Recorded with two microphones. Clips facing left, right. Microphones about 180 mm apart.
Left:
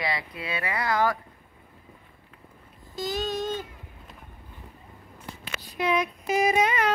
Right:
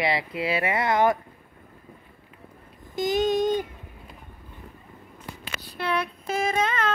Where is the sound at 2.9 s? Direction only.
20° right (ahead or behind).